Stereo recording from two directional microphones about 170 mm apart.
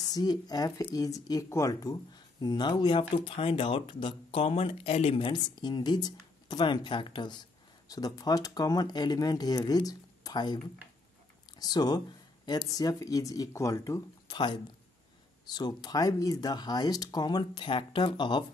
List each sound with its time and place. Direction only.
0.1 s speech: 25° left (ahead or behind)
11.6 s speech: 25° left (ahead or behind)